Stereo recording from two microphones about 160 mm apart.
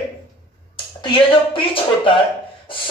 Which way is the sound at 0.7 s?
30° left (ahead or behind).